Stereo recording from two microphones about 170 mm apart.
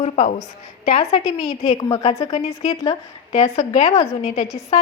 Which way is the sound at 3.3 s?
40° left (ahead or behind).